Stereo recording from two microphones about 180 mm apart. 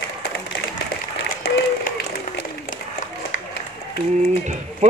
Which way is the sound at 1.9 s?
50° left (ahead or behind).